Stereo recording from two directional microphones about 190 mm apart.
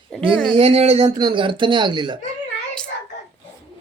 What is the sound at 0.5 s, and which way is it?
Speech, 35° right (ahead or behind).